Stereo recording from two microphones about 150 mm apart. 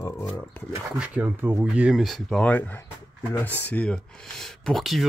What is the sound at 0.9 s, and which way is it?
Speech, 5° right (ahead or behind).